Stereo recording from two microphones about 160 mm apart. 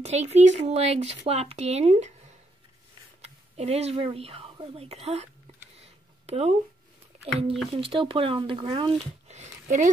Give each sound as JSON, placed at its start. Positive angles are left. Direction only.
{"t": 0.0, "sound": "speech", "side_deg": -45}
{"t": 3.2, "sound": "speech", "side_deg": -40}
{"t": 5.8, "sound": "a sound", "side_deg": -40}
{"t": 7.7, "sound": "speech", "side_deg": -35}